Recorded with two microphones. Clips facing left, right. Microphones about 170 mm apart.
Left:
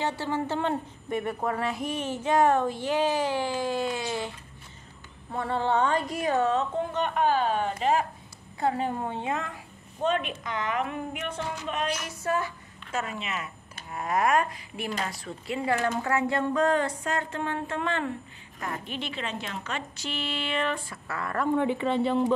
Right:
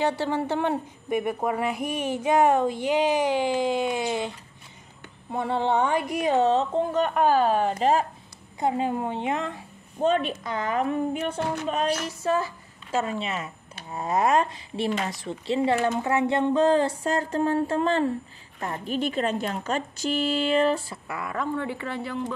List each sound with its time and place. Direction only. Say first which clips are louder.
0.2 s speech: right 3 dB; 15° right (ahead or behind)
5.3 s a woman's voice: right 2 dB; 15° right (ahead or behind); by 8.1 s 35° right (ahead or behind)
8.5 s a woman's voice: right 2 dB; 15° right (ahead or behind); by 21.0 s 35° right (ahead or behind)
21.1 s speech: even; 10° right (ahead or behind)
21.5 s a woman's voice: left 5 dB; 20° left (ahead or behind)